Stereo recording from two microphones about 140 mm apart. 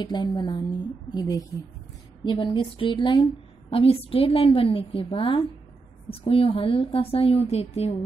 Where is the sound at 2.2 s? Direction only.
35° left (ahead or behind).